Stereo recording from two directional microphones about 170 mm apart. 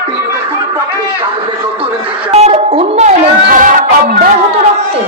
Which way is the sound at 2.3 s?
35° right (ahead or behind).